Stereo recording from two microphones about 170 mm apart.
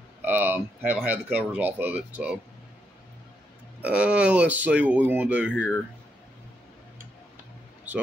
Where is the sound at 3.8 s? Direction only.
5° right (ahead or behind).